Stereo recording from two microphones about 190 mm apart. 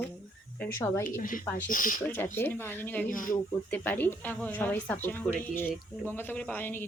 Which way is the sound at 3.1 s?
45° left (ahead or behind).